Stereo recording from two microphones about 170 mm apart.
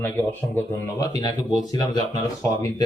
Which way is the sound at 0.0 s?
10° left (ahead or behind).